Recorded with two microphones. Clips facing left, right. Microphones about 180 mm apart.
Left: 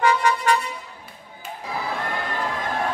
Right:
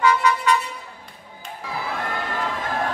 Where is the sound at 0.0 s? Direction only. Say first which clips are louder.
Right 1 dB; 50° left (ahead or behind).